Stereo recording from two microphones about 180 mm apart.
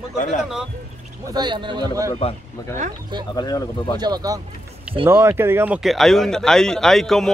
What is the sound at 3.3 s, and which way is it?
Speech, 20° left (ahead or behind).